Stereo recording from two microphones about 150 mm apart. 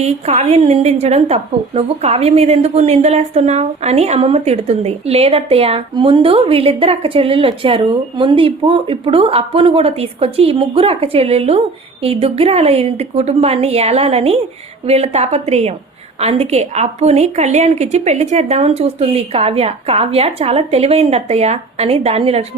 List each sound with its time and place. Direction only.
0.0 s a woman's voice: 45° right (ahead or behind)